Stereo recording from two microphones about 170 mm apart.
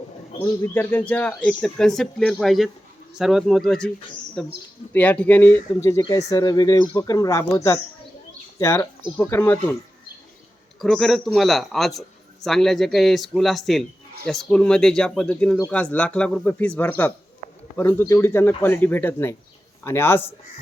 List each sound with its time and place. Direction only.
0.6 s a man's voice: 10° left (ahead or behind)
10.8 s a man's voice: centre (ahead or behind)